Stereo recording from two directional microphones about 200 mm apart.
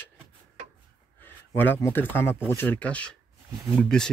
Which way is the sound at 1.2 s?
10° left (ahead or behind).